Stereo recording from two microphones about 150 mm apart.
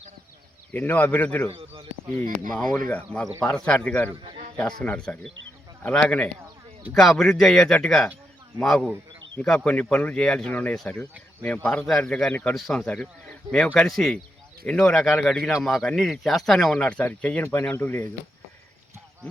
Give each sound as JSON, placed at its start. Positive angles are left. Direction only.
{"t": 0.7, "sound": "speech", "side_deg": 10}
{"t": 1.5, "sound": "speech", "side_deg": -35}
{"t": 2.5, "sound": "speech", "side_deg": 5}